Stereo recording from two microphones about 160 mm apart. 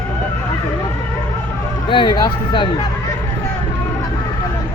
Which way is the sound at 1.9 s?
30° left (ahead or behind).